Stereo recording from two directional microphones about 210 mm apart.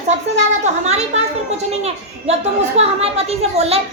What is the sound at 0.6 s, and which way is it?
A woman's voice, 30° right (ahead or behind).